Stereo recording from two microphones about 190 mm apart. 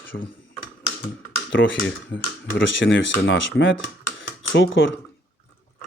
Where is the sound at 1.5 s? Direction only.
75° left (ahead or behind).